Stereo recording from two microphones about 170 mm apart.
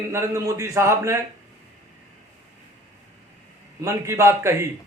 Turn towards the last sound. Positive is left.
turn(degrees=-15)  # may be behind; listen again after turning